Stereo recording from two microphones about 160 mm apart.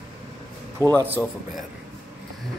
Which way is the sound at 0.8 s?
20° right (ahead or behind).